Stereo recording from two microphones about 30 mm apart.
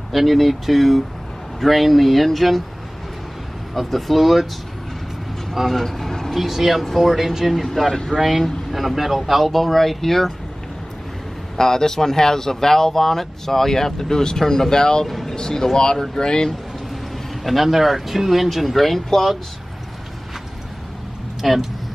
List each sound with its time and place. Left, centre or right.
0.1 s speech: centre
3.7 s speech: centre
5.7 s speech: centre
6.3 s speech: centre
7.1 s speech: centre
7.9 s speech: centre
8.2 s speech: centre
11.5 s speech: centre
16.9 s speech: centre
21.4 s speech: centre